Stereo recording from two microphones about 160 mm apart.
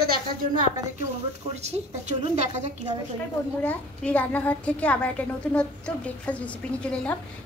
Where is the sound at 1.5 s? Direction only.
45° right (ahead or behind).